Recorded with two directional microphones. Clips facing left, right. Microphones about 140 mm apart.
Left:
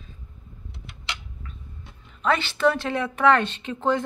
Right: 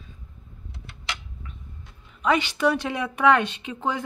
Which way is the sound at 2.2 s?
15° right (ahead or behind).